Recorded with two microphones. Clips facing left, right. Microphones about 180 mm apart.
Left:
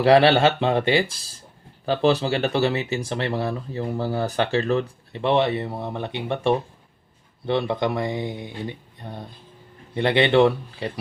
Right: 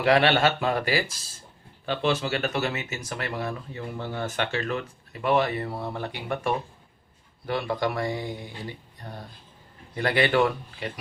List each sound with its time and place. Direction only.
0.0 s speech: 30° left (ahead or behind)